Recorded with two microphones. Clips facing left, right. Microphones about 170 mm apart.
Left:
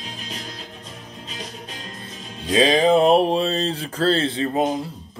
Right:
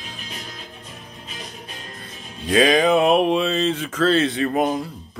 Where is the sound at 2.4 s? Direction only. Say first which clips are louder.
Even; 25° left (ahead or behind).